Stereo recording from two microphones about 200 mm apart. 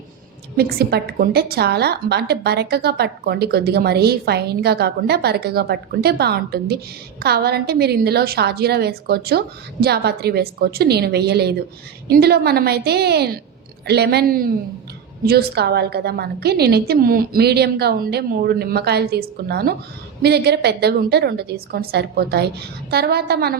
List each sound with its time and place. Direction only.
0.5 s a woman's voice: 50° right (ahead or behind)